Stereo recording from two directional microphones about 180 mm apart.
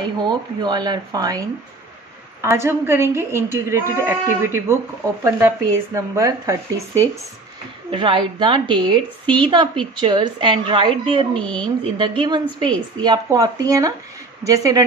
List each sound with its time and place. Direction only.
0.2 s a woman's voice: 25° right (ahead or behind)
7.9 s a woman's voice: 25° right (ahead or behind)
11.3 s speech: 5° left (ahead or behind)
12.0 s a woman's voice: 25° right (ahead or behind)